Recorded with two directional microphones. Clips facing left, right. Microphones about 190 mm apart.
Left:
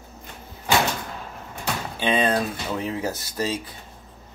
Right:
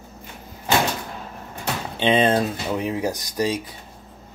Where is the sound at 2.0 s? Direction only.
25° right (ahead or behind).